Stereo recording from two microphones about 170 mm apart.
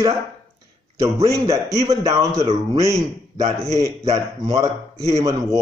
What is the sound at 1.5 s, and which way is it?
Speech, 20° right (ahead or behind).